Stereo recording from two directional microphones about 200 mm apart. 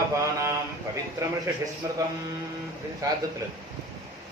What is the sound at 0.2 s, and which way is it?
Speech, 15° right (ahead or behind).